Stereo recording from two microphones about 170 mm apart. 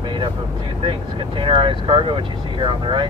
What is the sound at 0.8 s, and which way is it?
Speech, 30° right (ahead or behind).